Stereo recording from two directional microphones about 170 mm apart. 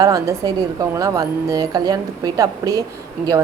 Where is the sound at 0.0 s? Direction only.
20° right (ahead or behind).